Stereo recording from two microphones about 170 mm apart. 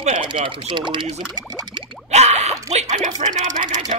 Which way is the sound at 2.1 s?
40° right (ahead or behind).